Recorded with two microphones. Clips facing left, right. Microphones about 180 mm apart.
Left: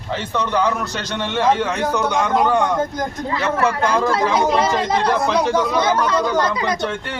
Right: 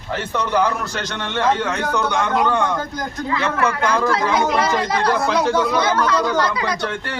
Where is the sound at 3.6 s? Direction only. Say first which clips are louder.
Left 2 dB; 30° left (ahead or behind).